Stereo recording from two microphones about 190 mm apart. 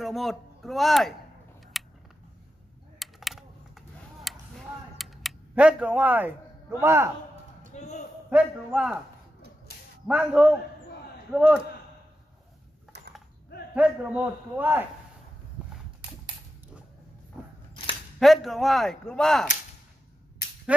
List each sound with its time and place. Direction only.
0.0 s speech: centre (ahead or behind)
1.7 s a sound: centre (ahead or behind)
3.0 s a sound: centre (ahead or behind)
7.7 s a sound: 35° left (ahead or behind)
8.3 s speech: 5° right (ahead or behind)
10.0 s a man's voice: 5° right (ahead or behind)
12.9 s mechanisms: 60° right (ahead or behind)
13.7 s a man's voice: 5° right (ahead or behind)
18.2 s speech: centre (ahead or behind)